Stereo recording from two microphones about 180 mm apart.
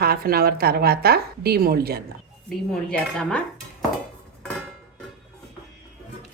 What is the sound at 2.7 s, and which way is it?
Dishes, 5° left (ahead or behind).